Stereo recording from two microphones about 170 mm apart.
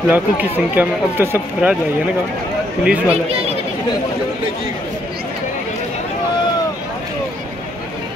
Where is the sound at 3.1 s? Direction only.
35° right (ahead or behind).